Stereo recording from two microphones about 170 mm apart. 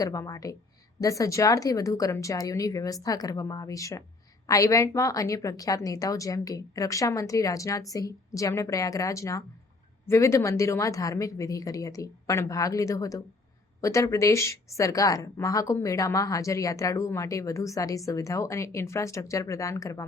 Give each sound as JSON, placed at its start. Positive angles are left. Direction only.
{"t": 0.0, "sound": "speech", "side_deg": 20}